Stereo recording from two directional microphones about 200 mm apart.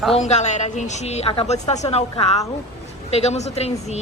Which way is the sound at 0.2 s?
35° left (ahead or behind).